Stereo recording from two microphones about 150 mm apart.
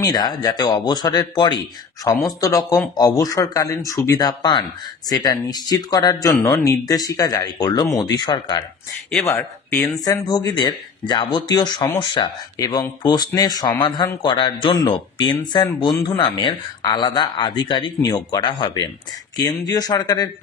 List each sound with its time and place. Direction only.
0.1 s speech: 25° left (ahead or behind)
9.2 s speech: 20° left (ahead or behind)
10.0 s speech: 25° left (ahead or behind)